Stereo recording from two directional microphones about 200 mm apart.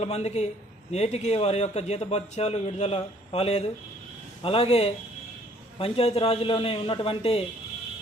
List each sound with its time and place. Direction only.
0.0 s a man's voice: 30° left (ahead or behind)